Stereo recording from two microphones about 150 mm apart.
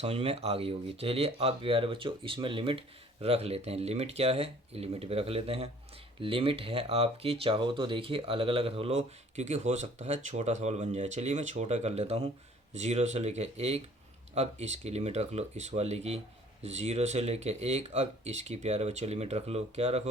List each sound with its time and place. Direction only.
0.0 s speech: 40° right (ahead or behind)